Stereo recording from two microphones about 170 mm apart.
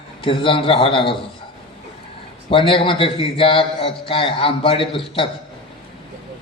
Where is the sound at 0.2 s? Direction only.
30° left (ahead or behind).